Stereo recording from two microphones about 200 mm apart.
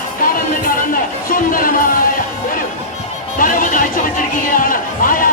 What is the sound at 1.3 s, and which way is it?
Speech, 45° left (ahead or behind).